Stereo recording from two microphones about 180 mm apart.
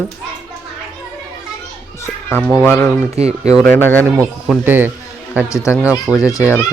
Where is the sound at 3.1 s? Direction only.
35° right (ahead or behind).